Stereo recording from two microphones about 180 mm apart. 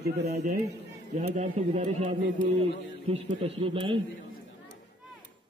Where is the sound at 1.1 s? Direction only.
45° right (ahead or behind).